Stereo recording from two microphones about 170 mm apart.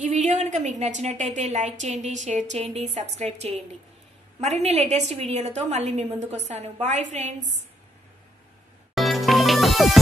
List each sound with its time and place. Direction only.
0.0 s a woman's voice: 45° right (ahead or behind)
8.9 s music: centre (ahead or behind)